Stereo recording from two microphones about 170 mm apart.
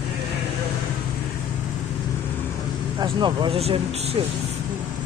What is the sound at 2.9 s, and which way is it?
Speech, 25° right (ahead or behind).